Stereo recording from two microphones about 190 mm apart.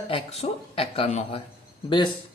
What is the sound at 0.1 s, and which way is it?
Speech, 30° left (ahead or behind).